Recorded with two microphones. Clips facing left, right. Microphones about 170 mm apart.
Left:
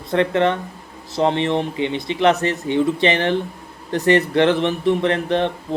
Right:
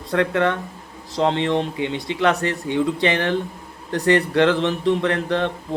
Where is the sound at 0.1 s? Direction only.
20° left (ahead or behind).